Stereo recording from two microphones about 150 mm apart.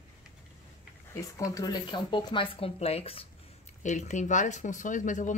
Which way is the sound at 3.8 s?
55° left (ahead or behind).